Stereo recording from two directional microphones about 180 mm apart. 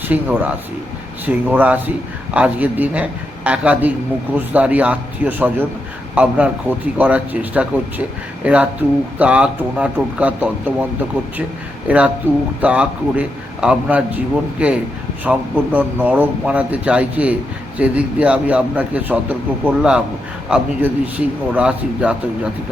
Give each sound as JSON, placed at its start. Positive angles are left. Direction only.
{"t": 0.1, "sound": "a man's voice", "side_deg": -10}
{"t": 11.9, "sound": "a man's voice", "side_deg": -5}